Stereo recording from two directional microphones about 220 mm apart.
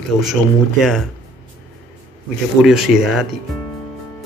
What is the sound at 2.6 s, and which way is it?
Speech, centre (ahead or behind).